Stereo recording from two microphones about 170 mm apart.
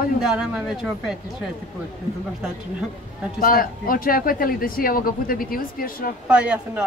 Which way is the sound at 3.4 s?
60° left (ahead or behind).